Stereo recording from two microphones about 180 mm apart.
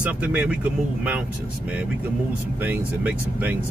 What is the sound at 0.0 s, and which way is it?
Speech, 5° right (ahead or behind).